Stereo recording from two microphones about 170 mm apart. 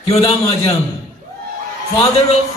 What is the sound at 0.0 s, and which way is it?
Speech, 35° left (ahead or behind).